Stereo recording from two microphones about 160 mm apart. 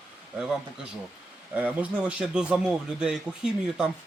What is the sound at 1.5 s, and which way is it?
Speech, 10° right (ahead or behind).